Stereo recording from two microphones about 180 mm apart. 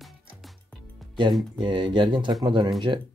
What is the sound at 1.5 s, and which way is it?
Speech, 25° right (ahead or behind).